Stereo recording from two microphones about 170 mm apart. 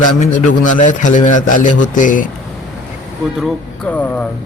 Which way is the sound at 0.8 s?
50° left (ahead or behind).